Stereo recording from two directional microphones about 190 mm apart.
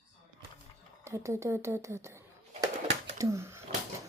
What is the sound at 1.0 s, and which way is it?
Speech, 15° right (ahead or behind).